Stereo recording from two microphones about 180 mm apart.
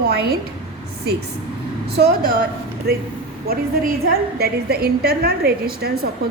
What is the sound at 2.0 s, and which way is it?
A woman's voice, 60° right (ahead or behind).